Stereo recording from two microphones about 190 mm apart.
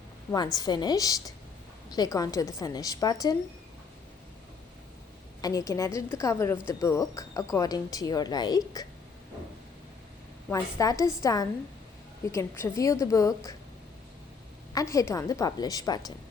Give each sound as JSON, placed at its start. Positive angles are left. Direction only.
{"t": 0.3, "sound": "a woman's voice", "side_deg": 20}
{"t": 5.4, "sound": "a woman's voice", "side_deg": 20}
{"t": 10.5, "sound": "a woman's voice", "side_deg": 15}
{"t": 14.7, "sound": "a woman's voice", "side_deg": 15}